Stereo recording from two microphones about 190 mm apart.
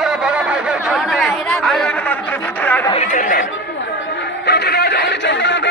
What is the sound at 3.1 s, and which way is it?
Speech, 45° left (ahead or behind).